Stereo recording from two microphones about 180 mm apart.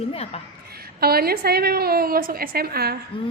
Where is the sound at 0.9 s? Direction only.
60° right (ahead or behind).